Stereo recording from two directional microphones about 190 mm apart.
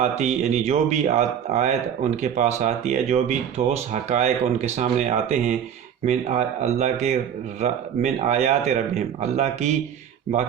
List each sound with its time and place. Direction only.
0.0 s speech: 35° right (ahead or behind)